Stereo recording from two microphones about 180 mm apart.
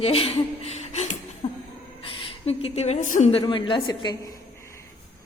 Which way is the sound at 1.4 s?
35° left (ahead or behind).